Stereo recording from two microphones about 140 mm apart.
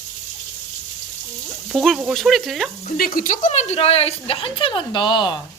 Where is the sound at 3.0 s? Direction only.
90° left; by 5.3 s 35° left (ahead or behind).